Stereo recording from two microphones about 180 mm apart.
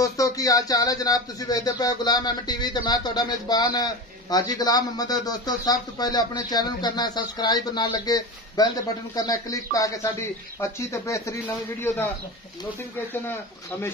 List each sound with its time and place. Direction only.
0.0 s speech: 20° left (ahead or behind)